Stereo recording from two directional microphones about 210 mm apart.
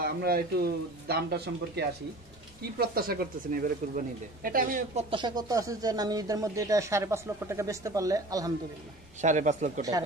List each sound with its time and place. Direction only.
0.0 s a man's voice: 45° right (ahead or behind)
5.1 s speech: 20° right (ahead or behind)
9.2 s speech: 35° right (ahead or behind)